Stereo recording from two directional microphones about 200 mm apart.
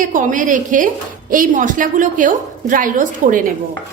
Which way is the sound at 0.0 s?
40° right (ahead or behind).